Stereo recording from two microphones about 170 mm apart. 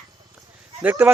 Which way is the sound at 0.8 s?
10° right (ahead or behind).